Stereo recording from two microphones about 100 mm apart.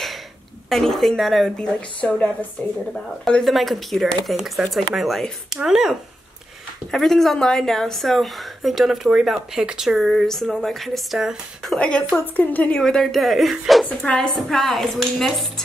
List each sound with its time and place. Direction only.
0.7 s a woman's voice: 5° left (ahead or behind)
2.0 s a woman's voice: 15° left (ahead or behind); by 11.7 s 5° right (ahead or behind)
11.7 s a woman's voice: 10° left (ahead or behind)
13.8 s a woman's voice: 10° left (ahead or behind)